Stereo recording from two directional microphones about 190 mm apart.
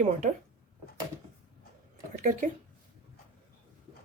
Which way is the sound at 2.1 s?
45° right (ahead or behind).